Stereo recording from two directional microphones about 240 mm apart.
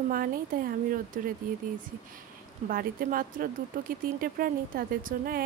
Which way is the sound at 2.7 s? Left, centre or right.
Right.